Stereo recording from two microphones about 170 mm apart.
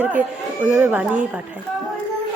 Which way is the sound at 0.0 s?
10° right (ahead or behind).